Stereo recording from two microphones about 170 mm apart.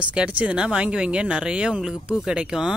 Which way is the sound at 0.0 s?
5° right (ahead or behind).